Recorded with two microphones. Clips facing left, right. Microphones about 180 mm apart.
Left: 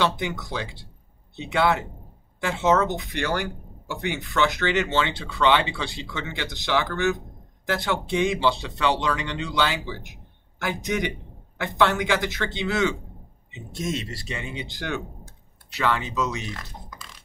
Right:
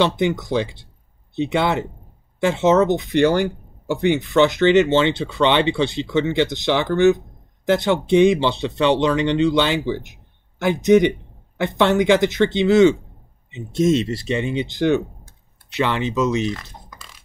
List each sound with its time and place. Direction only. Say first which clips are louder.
0.0 s speech: right 7 dB; 20° right (ahead or behind)